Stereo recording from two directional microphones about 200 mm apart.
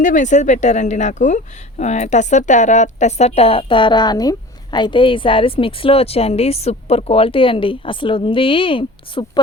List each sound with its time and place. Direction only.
0.0 s speech: 40° left (ahead or behind)